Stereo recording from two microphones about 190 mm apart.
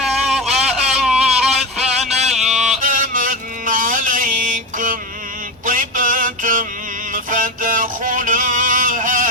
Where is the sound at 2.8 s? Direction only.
45° right (ahead or behind).